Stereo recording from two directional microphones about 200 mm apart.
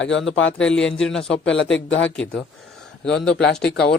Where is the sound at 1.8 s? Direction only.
65° left (ahead or behind).